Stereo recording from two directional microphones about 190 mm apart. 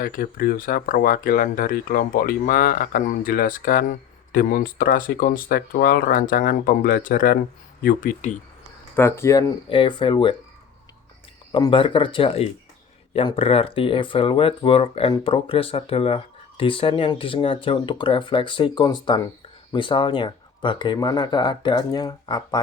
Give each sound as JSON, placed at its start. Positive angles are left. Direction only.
{"t": 0.0, "sound": "speech", "side_deg": 50}
{"t": 9.0, "sound": "speech", "side_deg": 15}
{"t": 11.5, "sound": "speech", "side_deg": 25}